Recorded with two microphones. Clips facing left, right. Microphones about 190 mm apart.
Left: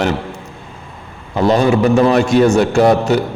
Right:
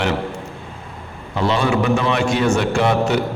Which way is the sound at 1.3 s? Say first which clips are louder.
Left 6 dB; 45° left (ahead or behind).